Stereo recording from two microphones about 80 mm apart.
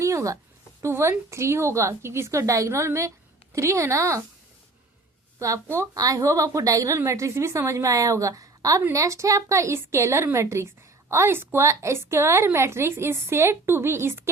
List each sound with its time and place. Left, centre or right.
0.0 s a sound: right
0.8 s a woman's voice: right
5.6 s a woman's voice: right
5.9 s a woman's voice: right